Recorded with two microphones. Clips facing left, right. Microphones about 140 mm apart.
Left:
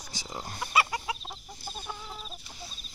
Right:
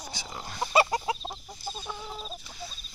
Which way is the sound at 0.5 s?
30° right (ahead or behind).